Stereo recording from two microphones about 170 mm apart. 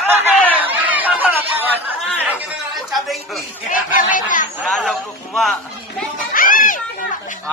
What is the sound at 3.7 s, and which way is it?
Speech, 50° left (ahead or behind).